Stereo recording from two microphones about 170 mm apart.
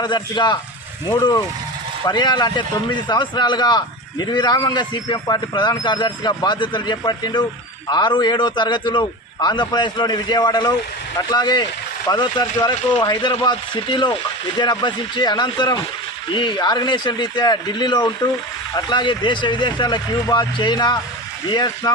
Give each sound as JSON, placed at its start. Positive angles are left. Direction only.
{"t": 0.0, "sound": "a man's voice", "side_deg": 25}